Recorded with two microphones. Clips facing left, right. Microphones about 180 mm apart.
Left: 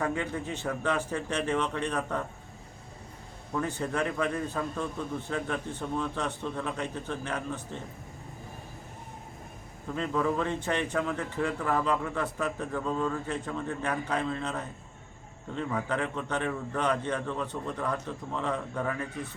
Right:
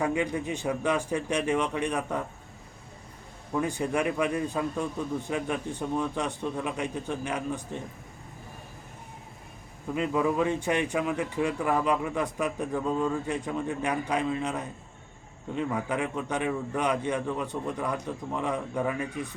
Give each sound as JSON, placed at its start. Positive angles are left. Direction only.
{"t": 0.0, "sound": "speech", "side_deg": -15}
{"t": 3.5, "sound": "speech", "side_deg": -10}
{"t": 9.9, "sound": "speech", "side_deg": -10}